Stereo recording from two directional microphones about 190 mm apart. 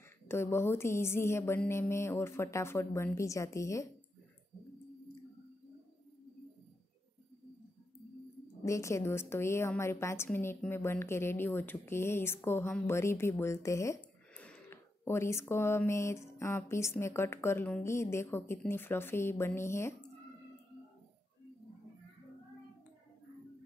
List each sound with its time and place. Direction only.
0.3 s a woman's voice: 10° left (ahead or behind)
8.6 s a woman's voice: 15° left (ahead or behind)